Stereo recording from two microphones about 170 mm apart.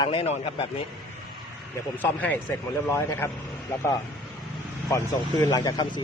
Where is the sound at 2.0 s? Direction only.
10° left (ahead or behind).